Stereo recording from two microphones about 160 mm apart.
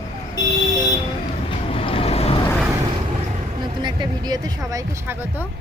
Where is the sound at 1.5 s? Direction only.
35° left (ahead or behind).